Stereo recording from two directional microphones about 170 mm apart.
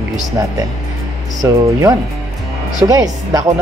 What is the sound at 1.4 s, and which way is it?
Speech, 20° right (ahead or behind).